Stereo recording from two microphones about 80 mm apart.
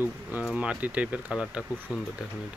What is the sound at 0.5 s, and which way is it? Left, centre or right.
Speech, centre.